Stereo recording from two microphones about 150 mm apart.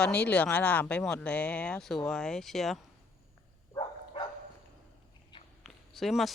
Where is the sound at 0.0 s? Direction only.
10° left (ahead or behind).